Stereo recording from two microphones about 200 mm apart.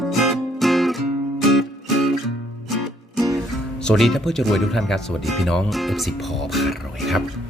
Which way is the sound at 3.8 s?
5° left (ahead or behind).